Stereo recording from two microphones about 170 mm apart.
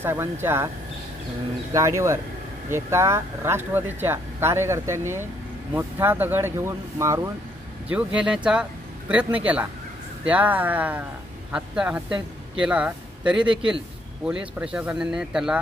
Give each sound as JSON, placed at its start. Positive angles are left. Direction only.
{"t": 0.0, "sound": "speech", "side_deg": -15}
{"t": 1.7, "sound": "speech", "side_deg": -15}
{"t": 7.9, "sound": "speech", "side_deg": -5}